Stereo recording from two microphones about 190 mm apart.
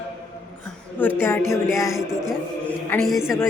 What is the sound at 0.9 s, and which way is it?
Speech, 10° left (ahead or behind).